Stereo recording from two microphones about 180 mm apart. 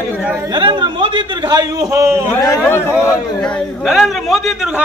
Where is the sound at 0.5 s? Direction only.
25° right (ahead or behind).